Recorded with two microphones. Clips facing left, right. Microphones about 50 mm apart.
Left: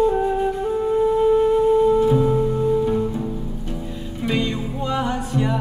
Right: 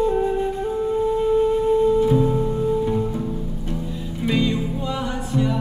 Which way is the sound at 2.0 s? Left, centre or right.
Centre.